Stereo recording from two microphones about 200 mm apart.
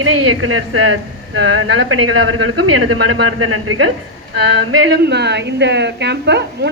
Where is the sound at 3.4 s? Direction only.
90° right.